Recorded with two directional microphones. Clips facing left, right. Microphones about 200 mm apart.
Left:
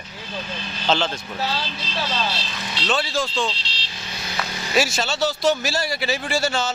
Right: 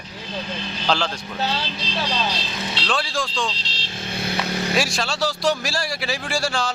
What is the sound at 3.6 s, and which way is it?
Vehicle, 45° right (ahead or behind).